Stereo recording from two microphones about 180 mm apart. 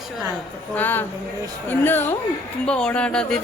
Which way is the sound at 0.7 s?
10° left (ahead or behind).